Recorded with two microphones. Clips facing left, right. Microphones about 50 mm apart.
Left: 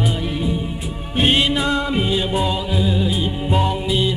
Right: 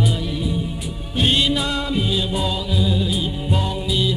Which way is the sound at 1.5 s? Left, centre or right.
Left.